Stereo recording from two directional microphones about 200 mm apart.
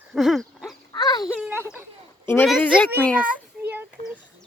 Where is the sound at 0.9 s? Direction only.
20° left (ahead or behind).